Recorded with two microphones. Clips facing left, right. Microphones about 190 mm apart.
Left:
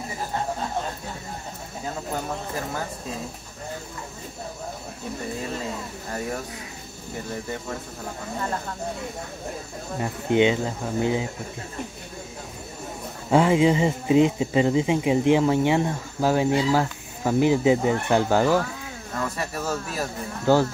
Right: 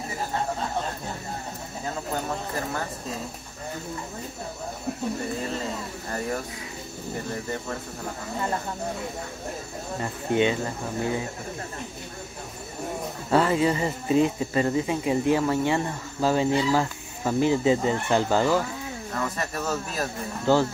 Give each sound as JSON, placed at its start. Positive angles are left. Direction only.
{"t": 10.3, "sound": "speech", "side_deg": 15}
{"t": 13.3, "sound": "speech", "side_deg": 15}